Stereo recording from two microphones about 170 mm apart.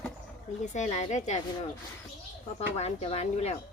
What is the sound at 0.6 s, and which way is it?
Speech, 45° left (ahead or behind).